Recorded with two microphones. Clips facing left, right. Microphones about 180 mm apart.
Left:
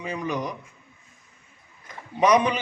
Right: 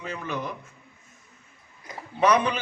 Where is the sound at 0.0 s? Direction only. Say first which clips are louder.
Left 4 dB; 15° left (ahead or behind).